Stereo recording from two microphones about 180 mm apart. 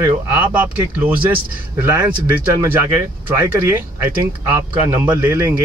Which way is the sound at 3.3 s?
10° right (ahead or behind).